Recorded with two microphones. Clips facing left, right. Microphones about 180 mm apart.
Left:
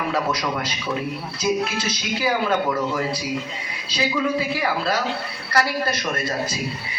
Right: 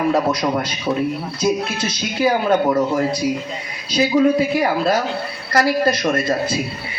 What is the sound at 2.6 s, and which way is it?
Speech, 30° right (ahead or behind).